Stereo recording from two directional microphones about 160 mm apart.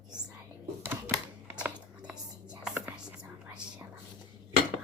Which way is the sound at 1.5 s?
10° right (ahead or behind).